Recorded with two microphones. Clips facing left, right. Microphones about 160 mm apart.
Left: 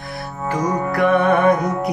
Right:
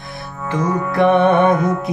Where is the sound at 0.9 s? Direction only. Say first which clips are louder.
Right 3 dB; 25° right (ahead or behind).